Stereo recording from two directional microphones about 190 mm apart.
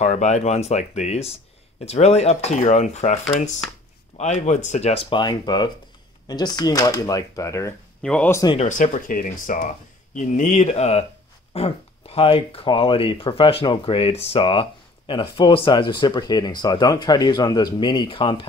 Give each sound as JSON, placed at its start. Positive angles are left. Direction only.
{"t": 0.0, "sound": "speech", "side_deg": 40}
{"t": 8.5, "sound": "speech", "side_deg": 40}